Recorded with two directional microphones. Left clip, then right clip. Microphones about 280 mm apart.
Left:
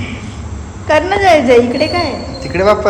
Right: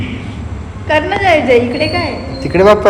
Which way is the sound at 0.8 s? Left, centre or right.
Left.